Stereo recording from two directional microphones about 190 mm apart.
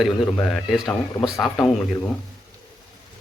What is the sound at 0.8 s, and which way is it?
Speech, 20° left (ahead or behind).